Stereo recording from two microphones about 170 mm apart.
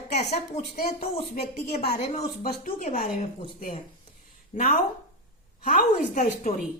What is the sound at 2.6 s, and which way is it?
Speech, 55° left (ahead or behind).